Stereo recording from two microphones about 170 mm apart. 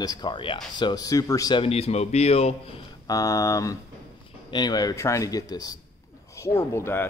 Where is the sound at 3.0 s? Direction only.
20° left (ahead or behind).